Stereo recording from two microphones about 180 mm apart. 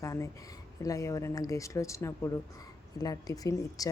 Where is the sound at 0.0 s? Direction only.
20° left (ahead or behind).